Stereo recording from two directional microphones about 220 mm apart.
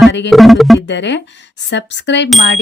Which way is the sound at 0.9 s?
55° left (ahead or behind).